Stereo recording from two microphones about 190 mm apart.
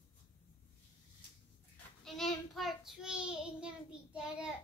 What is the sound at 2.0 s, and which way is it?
Child singing, centre (ahead or behind).